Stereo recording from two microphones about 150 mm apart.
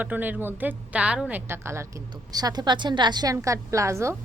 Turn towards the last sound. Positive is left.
turn(degrees=-20)  # may be behind; listen again after turning